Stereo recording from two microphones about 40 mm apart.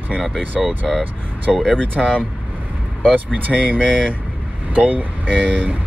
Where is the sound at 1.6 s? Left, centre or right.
Left.